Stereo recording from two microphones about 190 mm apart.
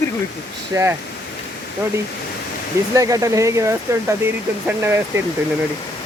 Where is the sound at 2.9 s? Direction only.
15° right (ahead or behind).